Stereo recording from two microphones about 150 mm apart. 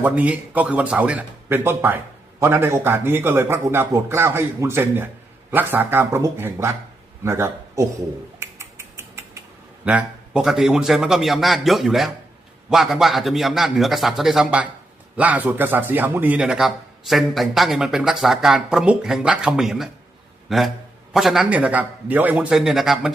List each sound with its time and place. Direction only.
0.0 s a man's voice: 10° right (ahead or behind)
8.4 s a sound: 15° right (ahead or behind)
9.8 s speech: 10° right (ahead or behind)